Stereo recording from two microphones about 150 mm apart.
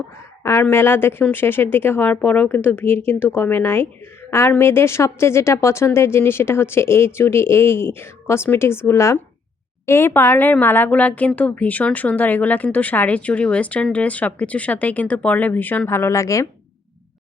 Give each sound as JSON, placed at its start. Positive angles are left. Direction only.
{"t": 0.4, "sound": "a woman's voice", "side_deg": 15}